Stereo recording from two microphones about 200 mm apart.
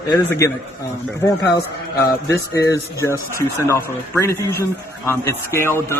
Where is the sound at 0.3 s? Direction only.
15° left (ahead or behind).